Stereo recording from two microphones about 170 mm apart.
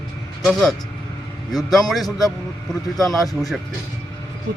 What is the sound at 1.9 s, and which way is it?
Speech, centre (ahead or behind).